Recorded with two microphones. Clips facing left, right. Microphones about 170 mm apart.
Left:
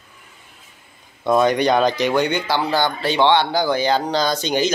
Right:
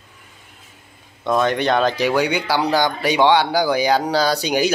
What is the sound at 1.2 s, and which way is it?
Speech, 5° left (ahead or behind).